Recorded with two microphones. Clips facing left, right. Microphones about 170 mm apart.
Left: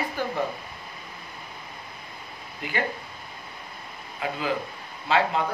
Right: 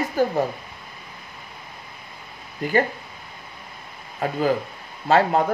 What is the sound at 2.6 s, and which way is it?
Speech, 40° right (ahead or behind).